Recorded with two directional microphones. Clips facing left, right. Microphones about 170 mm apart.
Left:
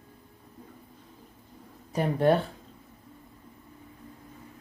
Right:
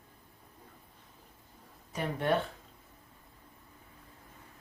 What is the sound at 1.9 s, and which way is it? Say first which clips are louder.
Speech: left 7 dB; 35° left (ahead or behind).